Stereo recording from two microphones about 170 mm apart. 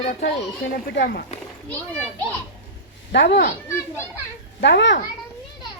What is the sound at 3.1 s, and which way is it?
Speech, 90° left.